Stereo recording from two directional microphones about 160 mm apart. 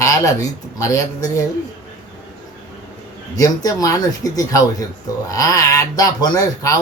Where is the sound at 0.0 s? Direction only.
20° left (ahead or behind).